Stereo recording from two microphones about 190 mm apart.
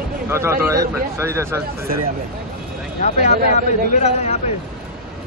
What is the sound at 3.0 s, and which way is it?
Speech, 40° left (ahead or behind).